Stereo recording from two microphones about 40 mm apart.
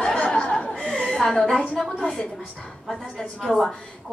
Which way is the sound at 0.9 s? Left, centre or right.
Centre.